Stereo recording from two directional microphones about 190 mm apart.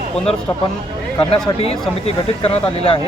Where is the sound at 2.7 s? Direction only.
35° left (ahead or behind).